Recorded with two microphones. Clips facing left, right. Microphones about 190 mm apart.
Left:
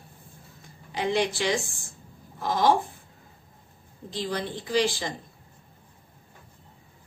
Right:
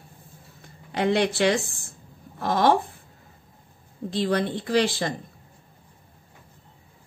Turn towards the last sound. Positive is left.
turn(degrees=-60)  # may be behind; listen again after turning